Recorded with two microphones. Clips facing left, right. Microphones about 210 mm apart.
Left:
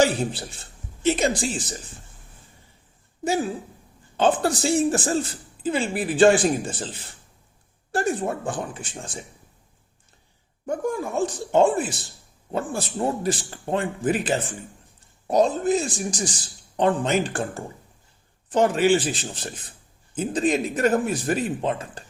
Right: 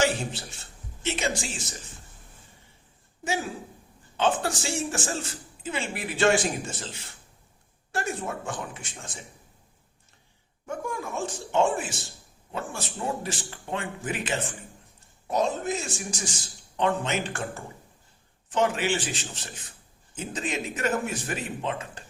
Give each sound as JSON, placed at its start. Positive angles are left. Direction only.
{"t": 0.0, "sound": "speech", "side_deg": 35}
{"t": 4.2, "sound": "speech", "side_deg": 35}
{"t": 10.7, "sound": "speech", "side_deg": 35}